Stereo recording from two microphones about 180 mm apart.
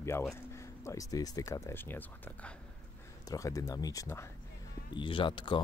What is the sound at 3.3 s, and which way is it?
Speech, 20° left (ahead or behind).